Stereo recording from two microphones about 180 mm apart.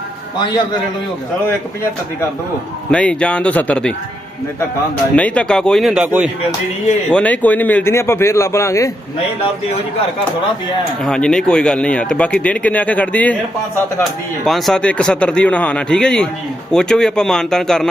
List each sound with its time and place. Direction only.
0.3 s a man's voice: 25° left (ahead or behind)
2.9 s speech: 5° left (ahead or behind)
5.1 s speech: 5° left (ahead or behind)
7.1 s speech: 5° left (ahead or behind)
11.0 s speech: 5° left (ahead or behind)